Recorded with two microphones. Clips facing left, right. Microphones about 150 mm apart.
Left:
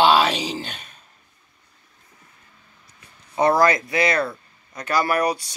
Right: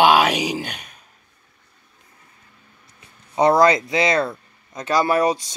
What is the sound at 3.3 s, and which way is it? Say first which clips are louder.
Speech: right 3 dB; 20° right (ahead or behind).